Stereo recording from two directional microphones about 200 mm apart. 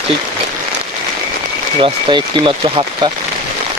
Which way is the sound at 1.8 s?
25° right (ahead or behind).